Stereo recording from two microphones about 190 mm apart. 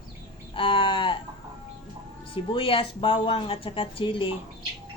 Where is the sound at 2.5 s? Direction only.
30° left (ahead or behind).